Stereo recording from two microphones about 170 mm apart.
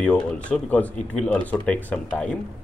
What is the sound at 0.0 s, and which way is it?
Speech, 5° left (ahead or behind).